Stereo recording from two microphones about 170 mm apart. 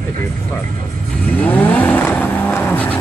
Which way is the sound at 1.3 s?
10° left (ahead or behind).